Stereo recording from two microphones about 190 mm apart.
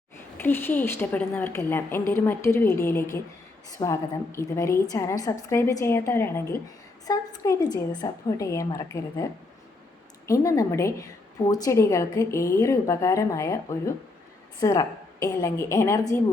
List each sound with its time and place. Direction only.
0.3 s a woman's voice: 10° left (ahead or behind)
10.2 s a woman's voice: 15° left (ahead or behind)